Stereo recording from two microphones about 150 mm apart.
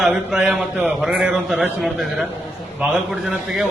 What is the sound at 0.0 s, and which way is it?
A man's voice, 5° right (ahead or behind).